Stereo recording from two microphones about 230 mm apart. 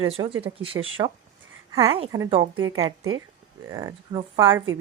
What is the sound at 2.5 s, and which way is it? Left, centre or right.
Speech, right.